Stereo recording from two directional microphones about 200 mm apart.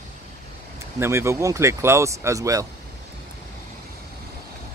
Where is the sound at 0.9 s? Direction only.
15° right (ahead or behind).